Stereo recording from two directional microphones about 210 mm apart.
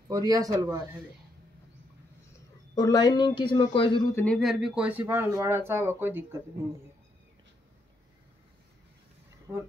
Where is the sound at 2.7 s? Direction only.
20° left (ahead or behind).